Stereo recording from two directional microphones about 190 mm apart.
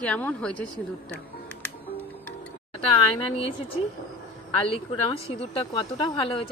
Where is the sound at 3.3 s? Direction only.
30° left (ahead or behind).